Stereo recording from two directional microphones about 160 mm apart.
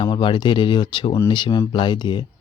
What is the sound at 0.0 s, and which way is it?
Speech, 30° left (ahead or behind).